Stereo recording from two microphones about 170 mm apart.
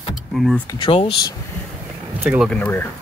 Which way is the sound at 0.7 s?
30° left (ahead or behind).